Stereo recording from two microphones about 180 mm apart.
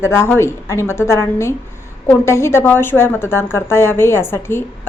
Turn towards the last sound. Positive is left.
turn(degrees=15)  # may be behind; listen again after turning